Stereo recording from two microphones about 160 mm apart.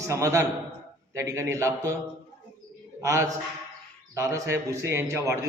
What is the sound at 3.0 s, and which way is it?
A man's voice, 20° right (ahead or behind).